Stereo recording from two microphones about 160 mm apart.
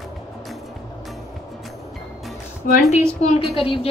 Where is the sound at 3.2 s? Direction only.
45° left (ahead or behind).